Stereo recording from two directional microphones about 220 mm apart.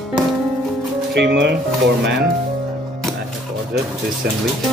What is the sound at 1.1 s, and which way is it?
Music, 50° right (ahead or behind).